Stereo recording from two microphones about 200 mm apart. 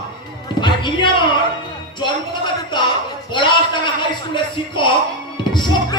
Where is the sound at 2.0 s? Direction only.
25° left (ahead or behind).